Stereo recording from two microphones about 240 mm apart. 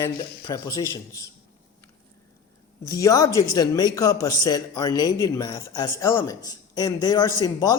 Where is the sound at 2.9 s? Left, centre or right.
Centre.